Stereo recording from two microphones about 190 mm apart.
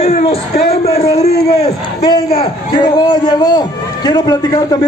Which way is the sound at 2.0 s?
25° left (ahead or behind).